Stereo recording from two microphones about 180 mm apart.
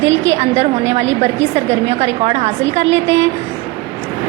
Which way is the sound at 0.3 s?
35° right (ahead or behind).